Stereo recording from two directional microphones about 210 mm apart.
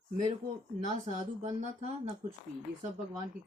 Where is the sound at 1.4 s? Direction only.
35° right (ahead or behind).